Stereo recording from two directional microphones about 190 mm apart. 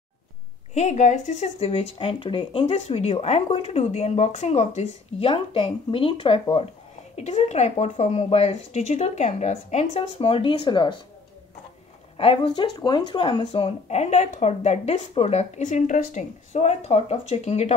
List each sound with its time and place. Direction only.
0.7 s speech: 35° left (ahead or behind)
12.2 s speech: 25° left (ahead or behind)